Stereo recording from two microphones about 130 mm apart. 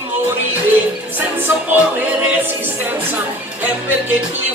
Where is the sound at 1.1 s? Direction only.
15° right (ahead or behind).